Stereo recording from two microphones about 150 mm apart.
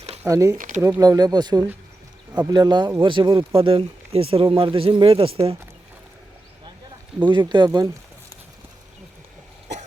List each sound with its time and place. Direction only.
0.0 s a sound: 45° right (ahead or behind)
0.3 s speech: 20° right (ahead or behind); by 5.5 s 40° right (ahead or behind)
7.3 s speech: 30° right (ahead or behind)